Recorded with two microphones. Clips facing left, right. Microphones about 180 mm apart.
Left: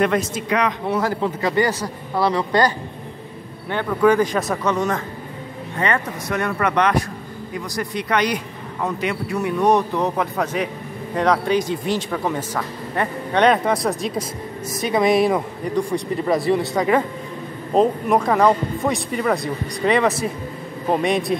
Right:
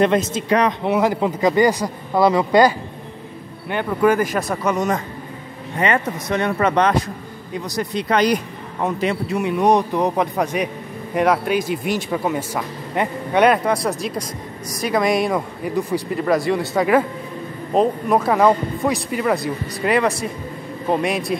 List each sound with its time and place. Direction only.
0.0 s speech: 25° right (ahead or behind)
0.5 s speech: 35° right (ahead or behind)
0.8 s speech: 15° right (ahead or behind)
3.7 s speech: 10° right (ahead or behind)
4.6 s speech: 15° right (ahead or behind)
9.6 s a man's voice: 15° right (ahead or behind)